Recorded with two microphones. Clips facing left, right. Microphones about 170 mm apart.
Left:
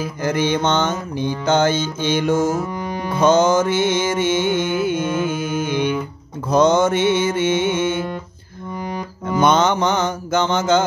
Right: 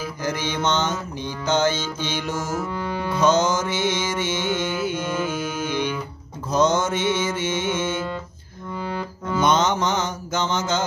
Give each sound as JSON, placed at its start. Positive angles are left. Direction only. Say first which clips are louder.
{"t": 0.2, "sound": "mantra", "louder": "left 6 dB", "side_deg": 55}
{"t": 2.7, "sound": "music", "louder": "left 2 dB", "side_deg": 15}
{"t": 3.2, "sound": "music", "louder": "left 5 dB", "side_deg": 55}
{"t": 8.7, "sound": "music", "louder": "left 1 dB", "side_deg": 15}
{"t": 9.4, "sound": "mantra", "louder": "left 4 dB", "side_deg": 60}